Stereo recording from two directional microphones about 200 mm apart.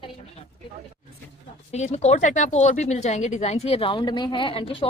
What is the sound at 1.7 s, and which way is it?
A woman's voice, 35° left (ahead or behind).